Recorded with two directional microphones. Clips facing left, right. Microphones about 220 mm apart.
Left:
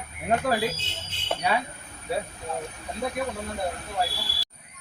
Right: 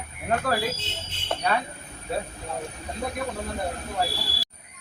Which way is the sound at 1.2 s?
10° left (ahead or behind).